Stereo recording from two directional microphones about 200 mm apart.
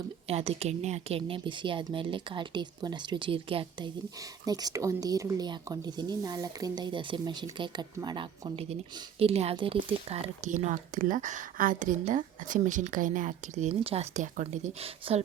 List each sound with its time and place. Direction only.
0.3 s speech: 30° right (ahead or behind)